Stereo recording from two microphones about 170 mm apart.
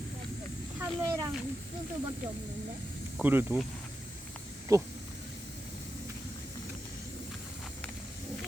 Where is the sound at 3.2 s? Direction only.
10° right (ahead or behind).